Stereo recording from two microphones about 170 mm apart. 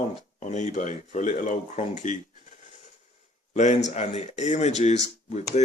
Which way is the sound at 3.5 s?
45° left (ahead or behind).